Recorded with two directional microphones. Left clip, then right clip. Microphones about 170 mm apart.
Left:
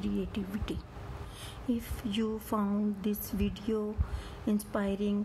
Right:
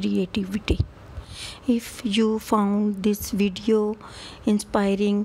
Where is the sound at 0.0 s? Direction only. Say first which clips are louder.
Right 10 dB; 45° right (ahead or behind).